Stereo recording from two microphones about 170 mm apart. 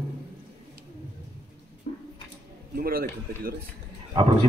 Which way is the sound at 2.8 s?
60° right (ahead or behind).